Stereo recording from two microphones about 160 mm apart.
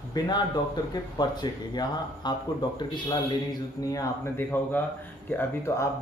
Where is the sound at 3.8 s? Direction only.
20° left (ahead or behind).